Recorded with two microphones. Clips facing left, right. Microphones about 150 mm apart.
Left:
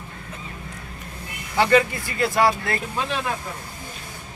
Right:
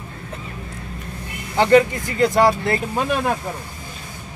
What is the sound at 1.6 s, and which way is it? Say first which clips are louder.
Speech: right 4 dB; 20° right (ahead or behind).